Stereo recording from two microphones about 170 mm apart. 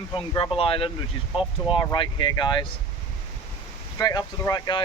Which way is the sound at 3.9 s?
20° left (ahead or behind).